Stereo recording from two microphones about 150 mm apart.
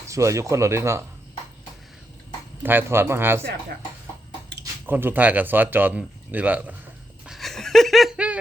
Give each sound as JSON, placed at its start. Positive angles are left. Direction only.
{"t": 0.1, "sound": "speech", "side_deg": -20}
{"t": 2.6, "sound": "a man's voice", "side_deg": -15}
{"t": 4.9, "sound": "a man's voice", "side_deg": -15}
{"t": 7.3, "sound": "laughter", "side_deg": 0}